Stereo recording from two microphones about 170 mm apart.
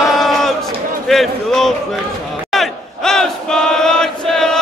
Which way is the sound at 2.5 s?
Centre (ahead or behind).